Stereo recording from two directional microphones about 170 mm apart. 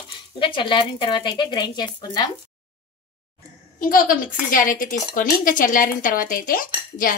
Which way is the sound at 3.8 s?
55° left (ahead or behind).